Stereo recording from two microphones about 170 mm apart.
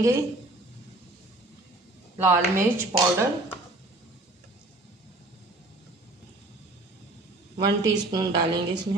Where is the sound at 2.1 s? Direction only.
15° right (ahead or behind).